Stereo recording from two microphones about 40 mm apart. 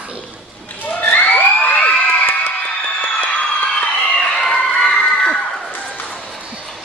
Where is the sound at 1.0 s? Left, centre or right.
Left.